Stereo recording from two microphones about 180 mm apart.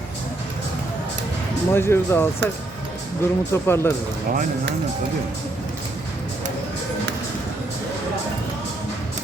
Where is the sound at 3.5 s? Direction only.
15° left (ahead or behind).